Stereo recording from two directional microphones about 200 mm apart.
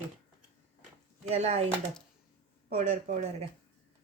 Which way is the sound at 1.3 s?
30° right (ahead or behind).